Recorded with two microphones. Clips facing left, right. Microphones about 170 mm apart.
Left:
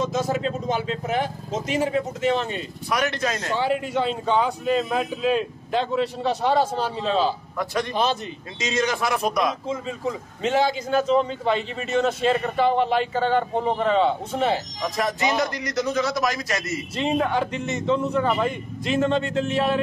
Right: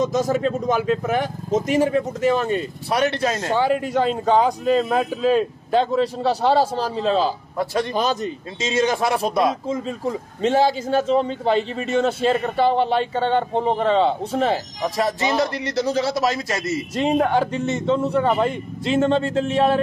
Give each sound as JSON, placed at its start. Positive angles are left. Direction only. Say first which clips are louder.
{"t": 0.0, "sound": "speech", "louder": "right 4 dB", "side_deg": -45}
{"t": 2.9, "sound": "a man's voice", "louder": "right 4 dB", "side_deg": -30}
{"t": 3.5, "sound": "a man's voice", "louder": "right 4 dB", "side_deg": -45}
{"t": 8.5, "sound": "a man's voice", "louder": "right 4 dB", "side_deg": -25}
{"t": 9.7, "sound": "a man's voice", "louder": "right 3 dB", "side_deg": -40}
{"t": 16.9, "sound": "a man's voice", "louder": "right 4 dB", "side_deg": -40}